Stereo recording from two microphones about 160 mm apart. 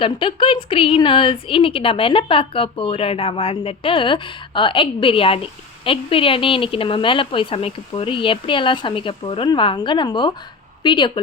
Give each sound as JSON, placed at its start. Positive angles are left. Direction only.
{"t": 0.0, "sound": "a woman's voice", "side_deg": 30}